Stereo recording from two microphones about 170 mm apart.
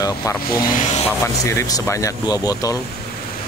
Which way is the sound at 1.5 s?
20° left (ahead or behind).